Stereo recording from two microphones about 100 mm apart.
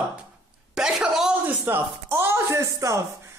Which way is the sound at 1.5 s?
20° right (ahead or behind).